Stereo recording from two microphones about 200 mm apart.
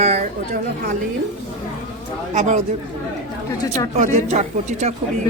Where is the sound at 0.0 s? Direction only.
35° right (ahead or behind).